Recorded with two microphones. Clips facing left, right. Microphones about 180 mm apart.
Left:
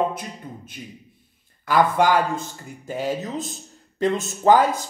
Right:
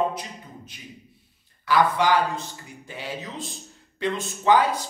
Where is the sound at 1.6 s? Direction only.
50° left (ahead or behind).